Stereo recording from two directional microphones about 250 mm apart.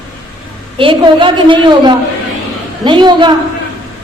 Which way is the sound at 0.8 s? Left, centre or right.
Centre.